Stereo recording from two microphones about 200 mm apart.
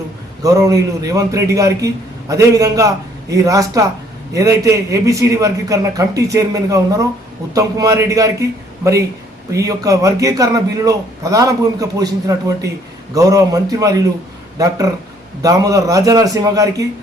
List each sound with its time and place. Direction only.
0.4 s a man's voice: 15° right (ahead or behind)
15.4 s a man's voice: 15° right (ahead or behind)